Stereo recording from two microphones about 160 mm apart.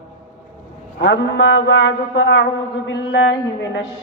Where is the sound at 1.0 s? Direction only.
90° left.